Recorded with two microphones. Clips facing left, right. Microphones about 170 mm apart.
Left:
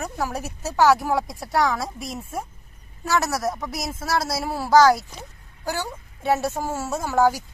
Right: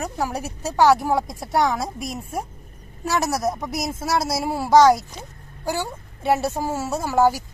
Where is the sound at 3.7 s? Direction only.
Centre (ahead or behind).